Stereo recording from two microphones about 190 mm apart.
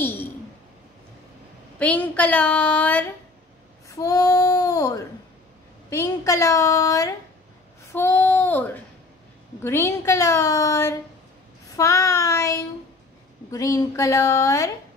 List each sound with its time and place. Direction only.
0.0 s a sound: 10° left (ahead or behind)
1.8 s a woman's voice: 10° left (ahead or behind)
3.9 s female singing: 15° left (ahead or behind)
5.9 s a woman's voice: 15° left (ahead or behind)
7.8 s female singing: 15° left (ahead or behind)
9.6 s a woman's voice: 15° left (ahead or behind)